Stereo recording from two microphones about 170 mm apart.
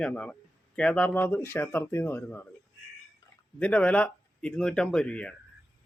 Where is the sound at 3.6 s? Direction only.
5° left (ahead or behind).